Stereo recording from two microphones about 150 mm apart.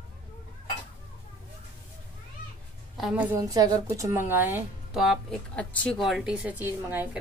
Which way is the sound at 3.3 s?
25° right (ahead or behind).